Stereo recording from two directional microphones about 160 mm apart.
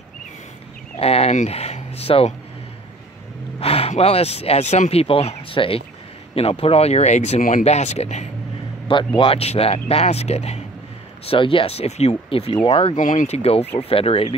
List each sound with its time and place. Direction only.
0.9 s speech: 40° left (ahead or behind)
3.5 s speech: 35° left (ahead or behind)
8.8 s speech: 30° left (ahead or behind)
13.0 s speech: 55° left (ahead or behind); by 14.3 s 35° left (ahead or behind)